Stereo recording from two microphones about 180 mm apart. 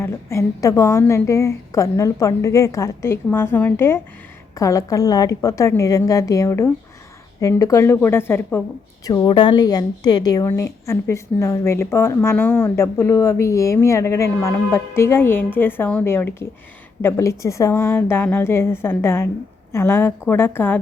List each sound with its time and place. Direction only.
0.0 s a woman's voice: 15° left (ahead or behind)
9.0 s a woman's voice: 25° left (ahead or behind)